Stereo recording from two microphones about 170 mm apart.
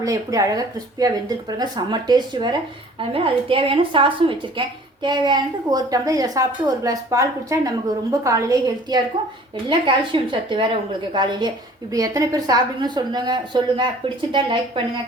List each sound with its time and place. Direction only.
0.0 s a woman's voice: 20° right (ahead or behind)